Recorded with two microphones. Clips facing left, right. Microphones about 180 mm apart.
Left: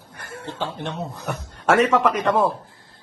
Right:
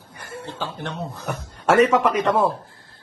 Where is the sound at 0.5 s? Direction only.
25° left (ahead or behind).